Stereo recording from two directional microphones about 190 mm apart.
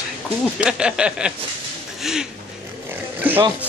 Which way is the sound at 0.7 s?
5° right (ahead or behind).